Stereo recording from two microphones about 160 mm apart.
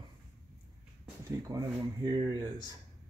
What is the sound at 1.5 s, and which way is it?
Speech, 25° right (ahead or behind).